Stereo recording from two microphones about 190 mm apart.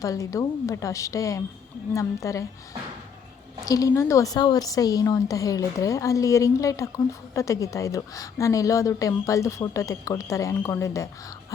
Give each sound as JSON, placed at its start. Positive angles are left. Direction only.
{"t": 0.0, "sound": "a woman's voice", "side_deg": 15}
{"t": 3.7, "sound": "a woman's voice", "side_deg": 15}